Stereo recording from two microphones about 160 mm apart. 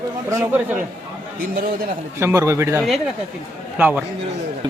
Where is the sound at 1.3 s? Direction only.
65° right (ahead or behind).